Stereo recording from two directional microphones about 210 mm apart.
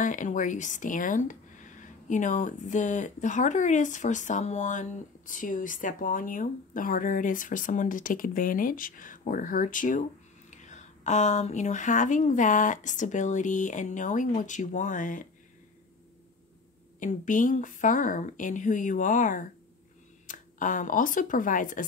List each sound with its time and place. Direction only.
0.0 s speech: 40° left (ahead or behind)
17.0 s speech: 40° left (ahead or behind)